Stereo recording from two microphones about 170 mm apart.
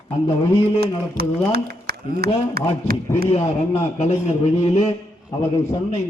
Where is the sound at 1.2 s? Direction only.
70° right (ahead or behind).